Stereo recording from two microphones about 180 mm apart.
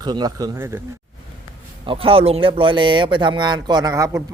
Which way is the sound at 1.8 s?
30° right (ahead or behind).